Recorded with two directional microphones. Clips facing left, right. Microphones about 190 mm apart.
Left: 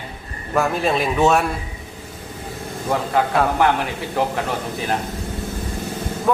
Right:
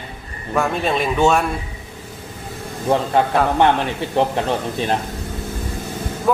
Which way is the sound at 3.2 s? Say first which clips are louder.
Even; 30° right (ahead or behind).